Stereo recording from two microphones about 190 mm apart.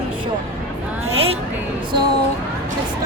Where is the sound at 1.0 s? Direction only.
30° right (ahead or behind).